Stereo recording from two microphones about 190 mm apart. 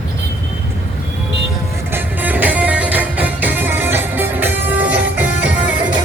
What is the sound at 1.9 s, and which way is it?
Music, 10° right (ahead or behind).